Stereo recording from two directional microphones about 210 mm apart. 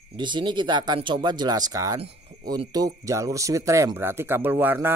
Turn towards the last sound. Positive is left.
turn(degrees=-10)  # may be behind; listen again after turning